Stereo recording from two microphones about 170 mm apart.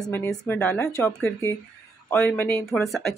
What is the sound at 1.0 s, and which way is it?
Speech, 20° left (ahead or behind).